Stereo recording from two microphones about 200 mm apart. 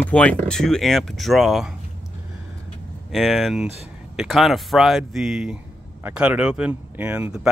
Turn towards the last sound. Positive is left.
turn(degrees=-5)  # may be behind; listen again after turning